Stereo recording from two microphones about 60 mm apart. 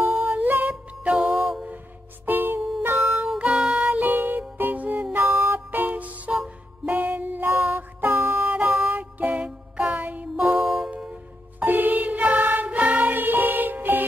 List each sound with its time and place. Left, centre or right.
0.0 s music: right
2.2 s music: right
3.4 s music: centre
3.8 s music: right
5.1 s music: right
8.5 s music: right
11.6 s music: right